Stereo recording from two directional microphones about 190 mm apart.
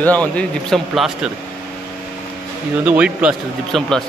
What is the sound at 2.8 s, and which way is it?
Speech, 5° right (ahead or behind).